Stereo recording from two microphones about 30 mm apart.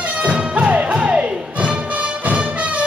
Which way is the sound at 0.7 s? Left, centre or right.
Right.